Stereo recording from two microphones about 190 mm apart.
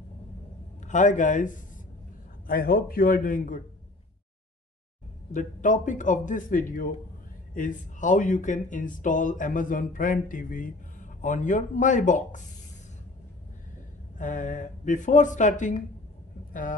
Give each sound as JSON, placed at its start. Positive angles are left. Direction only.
{"t": 0.8, "sound": "speech", "side_deg": 40}
{"t": 5.3, "sound": "a man's voice", "side_deg": 40}
{"t": 14.1, "sound": "a man's voice", "side_deg": 40}